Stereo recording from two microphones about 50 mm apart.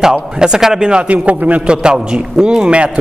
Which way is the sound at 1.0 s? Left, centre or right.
Right.